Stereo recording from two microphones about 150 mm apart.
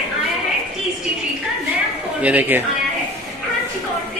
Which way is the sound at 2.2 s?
10° right (ahead or behind).